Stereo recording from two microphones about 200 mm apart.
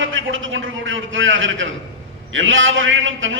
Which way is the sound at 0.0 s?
75° right (ahead or behind).